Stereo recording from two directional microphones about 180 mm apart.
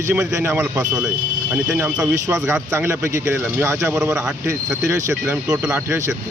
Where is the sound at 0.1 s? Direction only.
10° right (ahead or behind).